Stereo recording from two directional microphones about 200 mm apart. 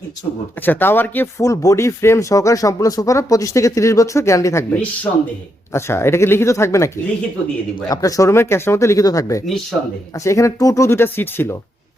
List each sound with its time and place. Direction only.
0.6 s speech: 10° left (ahead or behind)